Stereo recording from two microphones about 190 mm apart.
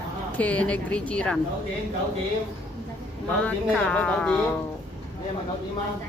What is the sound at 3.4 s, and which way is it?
Speech, 5° left (ahead or behind).